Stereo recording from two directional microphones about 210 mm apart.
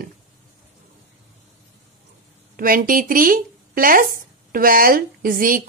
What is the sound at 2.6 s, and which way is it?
Speech, 45° right (ahead or behind).